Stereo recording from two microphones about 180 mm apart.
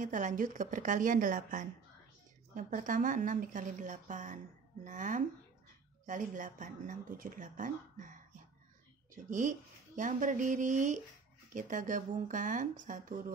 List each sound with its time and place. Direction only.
0.0 s speech: 45° right (ahead or behind)